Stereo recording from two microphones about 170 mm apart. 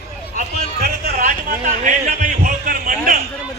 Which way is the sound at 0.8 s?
65° right (ahead or behind).